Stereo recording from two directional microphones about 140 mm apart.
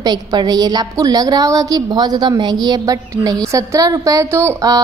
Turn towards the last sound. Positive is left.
turn(degrees=-25)  # may be behind; listen again after turning